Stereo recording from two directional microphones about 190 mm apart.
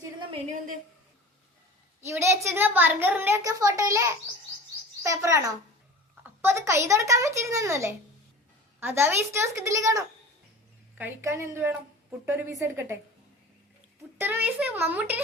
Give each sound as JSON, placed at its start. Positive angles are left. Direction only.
{"t": 0.0, "sound": "a sound", "side_deg": -25}
{"t": 2.0, "sound": "a woman's voice", "side_deg": -15}
{"t": 14.2, "sound": "a woman's voice", "side_deg": -10}